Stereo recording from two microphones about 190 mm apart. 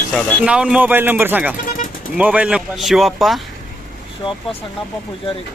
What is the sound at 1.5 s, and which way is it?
Vehicle, 45° left (ahead or behind).